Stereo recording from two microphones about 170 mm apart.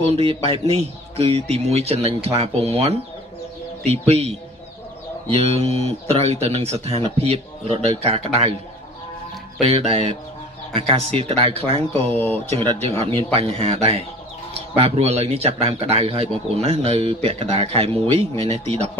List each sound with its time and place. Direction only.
0.0 s a man's voice: 35° right (ahead or behind)
9.6 s a man's voice: 35° right (ahead or behind)
12.1 s speech: 10° left (ahead or behind)
12.4 s a man's voice: 35° right (ahead or behind)